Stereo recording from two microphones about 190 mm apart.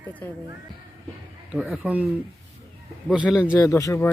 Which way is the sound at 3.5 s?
15° left (ahead or behind).